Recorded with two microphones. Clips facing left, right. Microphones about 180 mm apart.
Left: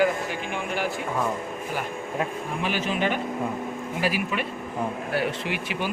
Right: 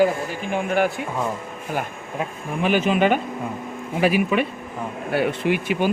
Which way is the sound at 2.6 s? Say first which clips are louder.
Right 9 dB; 60° right (ahead or behind).